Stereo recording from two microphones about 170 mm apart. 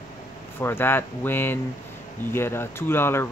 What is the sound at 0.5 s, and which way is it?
Speech, 15° left (ahead or behind).